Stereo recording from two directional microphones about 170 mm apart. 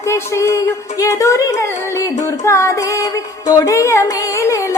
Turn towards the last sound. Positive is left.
turn(degrees=15)  # may be behind; listen again after turning